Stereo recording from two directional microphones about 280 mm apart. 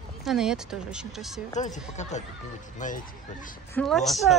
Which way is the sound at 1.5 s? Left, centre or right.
Left.